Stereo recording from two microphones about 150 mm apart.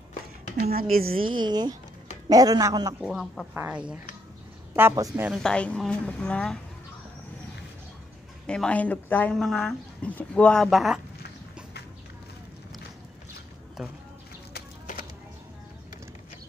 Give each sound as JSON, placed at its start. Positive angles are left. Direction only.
{"t": 0.6, "sound": "speech", "side_deg": -85}
{"t": 1.1, "sound": "a man's voice", "side_deg": -35}
{"t": 3.0, "sound": "speech", "side_deg": -5}
{"t": 4.9, "sound": "a man's voice", "side_deg": -25}
{"t": 5.4, "sound": "speech", "side_deg": 5}
{"t": 8.5, "sound": "speech", "side_deg": 5}
{"t": 13.8, "sound": "speech", "side_deg": -5}
{"t": 14.5, "sound": "music", "side_deg": 60}